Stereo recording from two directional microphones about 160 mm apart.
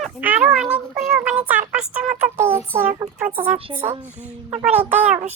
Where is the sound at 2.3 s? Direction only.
15° right (ahead or behind).